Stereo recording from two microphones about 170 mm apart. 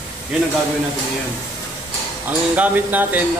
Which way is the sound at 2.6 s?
10° right (ahead or behind).